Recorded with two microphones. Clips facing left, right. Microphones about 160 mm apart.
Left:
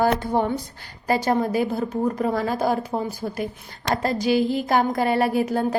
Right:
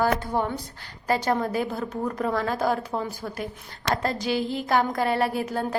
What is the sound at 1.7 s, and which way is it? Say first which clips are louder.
Speech: left 5 dB; 25° left (ahead or behind).